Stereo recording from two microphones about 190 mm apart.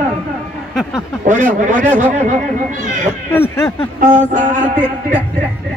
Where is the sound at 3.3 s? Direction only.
10° left (ahead or behind).